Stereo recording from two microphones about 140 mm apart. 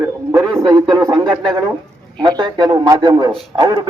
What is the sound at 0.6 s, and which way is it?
Speech, 25° right (ahead or behind).